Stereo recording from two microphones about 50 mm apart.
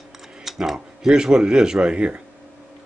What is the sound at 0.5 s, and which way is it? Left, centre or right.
Speech, centre.